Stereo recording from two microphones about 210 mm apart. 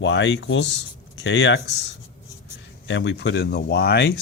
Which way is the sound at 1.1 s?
55° left (ahead or behind).